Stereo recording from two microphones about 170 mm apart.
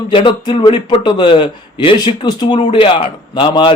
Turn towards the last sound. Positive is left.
turn(degrees=30)  # may be behind; listen again after turning